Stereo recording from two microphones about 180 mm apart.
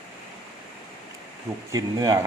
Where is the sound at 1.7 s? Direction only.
20° right (ahead or behind).